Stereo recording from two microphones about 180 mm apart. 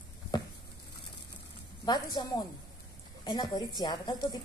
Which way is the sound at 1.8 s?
25° left (ahead or behind).